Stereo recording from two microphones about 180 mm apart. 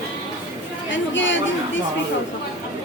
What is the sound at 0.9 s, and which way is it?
Chatter, 90° left.